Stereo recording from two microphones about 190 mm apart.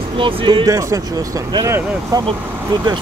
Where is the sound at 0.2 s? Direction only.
25° right (ahead or behind).